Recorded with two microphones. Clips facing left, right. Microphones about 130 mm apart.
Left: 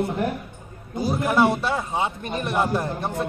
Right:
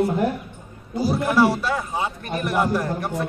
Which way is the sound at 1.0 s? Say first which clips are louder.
Right 1 dB; 20° left (ahead or behind).